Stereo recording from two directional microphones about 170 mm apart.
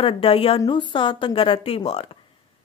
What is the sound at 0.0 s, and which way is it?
Speech, 35° left (ahead or behind).